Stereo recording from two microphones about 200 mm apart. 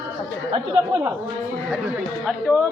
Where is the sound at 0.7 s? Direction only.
10° right (ahead or behind).